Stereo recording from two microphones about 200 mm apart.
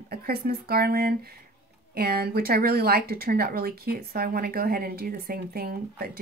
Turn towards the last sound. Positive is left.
turn(degrees=-50)  # may be behind; listen again after turning